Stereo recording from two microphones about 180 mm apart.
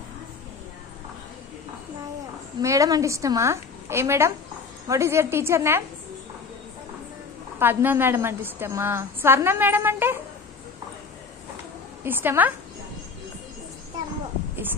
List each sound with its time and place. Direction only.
2.6 s a woman's voice: 20° right (ahead or behind)
7.5 s a woman's voice: 10° right (ahead or behind)
12.0 s a woman's voice: 10° right (ahead or behind)